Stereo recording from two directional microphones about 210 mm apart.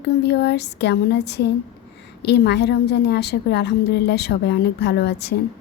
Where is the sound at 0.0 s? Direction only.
55° left (ahead or behind).